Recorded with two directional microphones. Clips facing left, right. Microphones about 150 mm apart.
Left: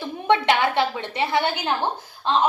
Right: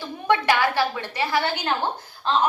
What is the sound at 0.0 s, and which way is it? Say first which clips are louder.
A woman's voice: left 2 dB; 25° left (ahead or behind).